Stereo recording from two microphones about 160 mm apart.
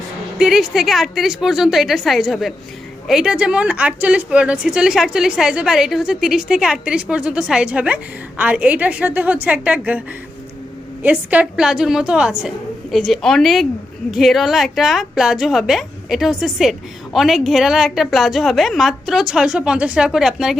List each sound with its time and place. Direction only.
0.3 s a woman's voice: centre (ahead or behind)
11.0 s a woman's voice: 10° right (ahead or behind)